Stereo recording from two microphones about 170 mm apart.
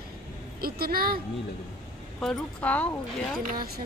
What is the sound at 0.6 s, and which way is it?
Speech, 60° right (ahead or behind).